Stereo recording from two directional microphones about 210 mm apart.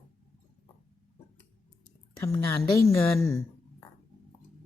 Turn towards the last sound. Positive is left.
turn(degrees=15)  # may be behind; listen again after turning